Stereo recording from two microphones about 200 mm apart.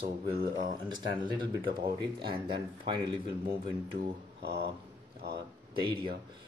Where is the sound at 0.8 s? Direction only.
20° right (ahead or behind).